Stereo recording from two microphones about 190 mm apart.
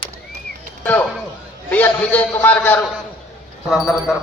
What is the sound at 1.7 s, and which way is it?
A man's voice, 10° left (ahead or behind).